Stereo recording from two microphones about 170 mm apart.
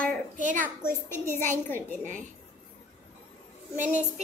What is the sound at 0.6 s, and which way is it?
Speech, 15° left (ahead or behind).